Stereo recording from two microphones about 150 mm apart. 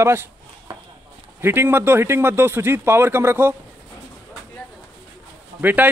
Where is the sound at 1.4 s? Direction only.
15° right (ahead or behind).